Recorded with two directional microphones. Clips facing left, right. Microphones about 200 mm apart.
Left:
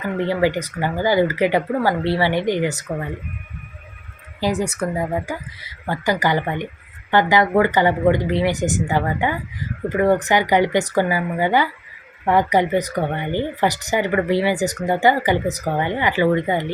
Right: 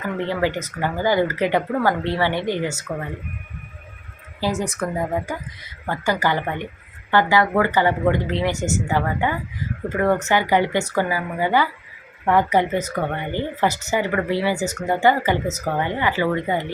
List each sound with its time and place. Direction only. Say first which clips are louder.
0.3 s speech: left 5 dB; 10° left (ahead or behind)
4.6 s speech: left 2 dB; 10° left (ahead or behind)
14.6 s speech: left 3 dB; 35° left (ahead or behind)
14.8 s speech: left 1 dB; 15° left (ahead or behind)